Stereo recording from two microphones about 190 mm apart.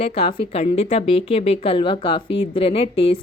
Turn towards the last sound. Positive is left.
turn(degrees=30)  # may be behind; listen again after turning